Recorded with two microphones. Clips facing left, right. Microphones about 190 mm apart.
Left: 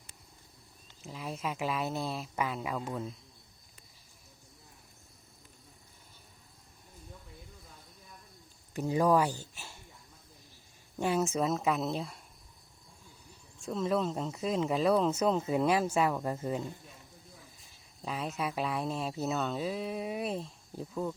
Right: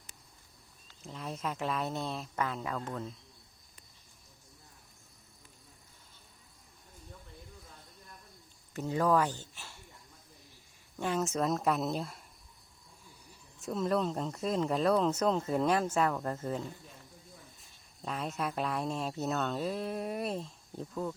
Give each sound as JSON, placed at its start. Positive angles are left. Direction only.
{"t": 1.0, "sound": "speech", "side_deg": 5}
{"t": 8.7, "sound": "speech", "side_deg": 15}
{"t": 10.9, "sound": "speech", "side_deg": 10}
{"t": 13.6, "sound": "speech", "side_deg": 0}